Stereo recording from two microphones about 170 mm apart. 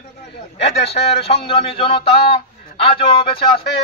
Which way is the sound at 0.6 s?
35° left (ahead or behind).